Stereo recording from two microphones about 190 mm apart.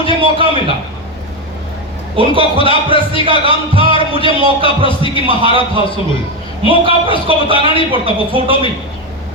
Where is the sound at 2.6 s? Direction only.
30° right (ahead or behind).